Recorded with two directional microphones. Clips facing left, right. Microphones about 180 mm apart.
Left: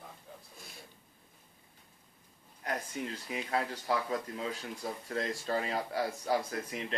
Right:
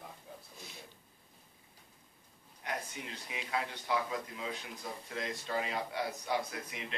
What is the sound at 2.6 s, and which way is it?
Speech, 40° left (ahead or behind).